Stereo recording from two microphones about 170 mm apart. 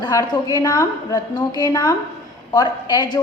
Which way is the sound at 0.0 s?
25° left (ahead or behind).